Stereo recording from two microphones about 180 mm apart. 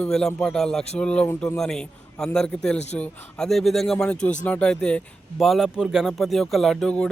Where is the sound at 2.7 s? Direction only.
40° left (ahead or behind).